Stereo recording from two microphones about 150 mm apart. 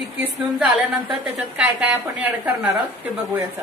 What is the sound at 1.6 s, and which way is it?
A woman's voice, 10° right (ahead or behind).